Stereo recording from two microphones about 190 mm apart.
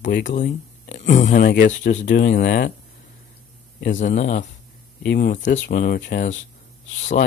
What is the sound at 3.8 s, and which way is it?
Speech, 40° left (ahead or behind).